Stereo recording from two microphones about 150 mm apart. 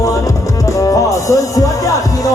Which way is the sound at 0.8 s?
20° left (ahead or behind).